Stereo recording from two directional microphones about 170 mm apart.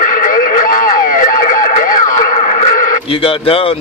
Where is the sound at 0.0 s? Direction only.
50° left (ahead or behind).